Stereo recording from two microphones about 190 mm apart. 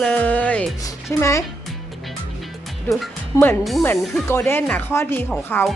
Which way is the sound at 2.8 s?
Centre (ahead or behind).